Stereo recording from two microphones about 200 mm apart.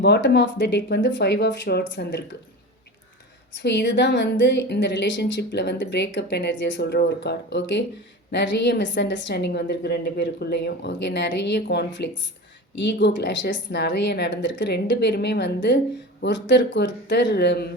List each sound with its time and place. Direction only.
0.0 s a woman's voice: 60° left (ahead or behind)
3.5 s a woman's voice: 60° left (ahead or behind)